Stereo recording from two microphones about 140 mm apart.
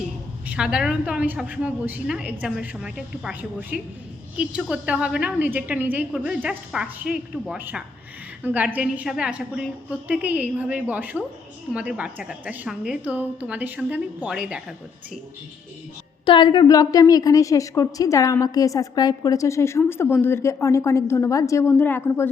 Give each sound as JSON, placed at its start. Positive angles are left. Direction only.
{"t": 0.4, "sound": "a woman's voice", "side_deg": -10}
{"t": 16.2, "sound": "a woman's voice", "side_deg": 35}